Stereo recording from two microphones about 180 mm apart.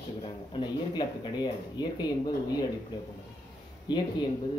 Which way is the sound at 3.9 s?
25° left (ahead or behind).